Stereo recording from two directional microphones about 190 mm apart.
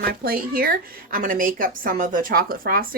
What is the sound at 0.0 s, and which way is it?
A woman's voice, 50° right (ahead or behind).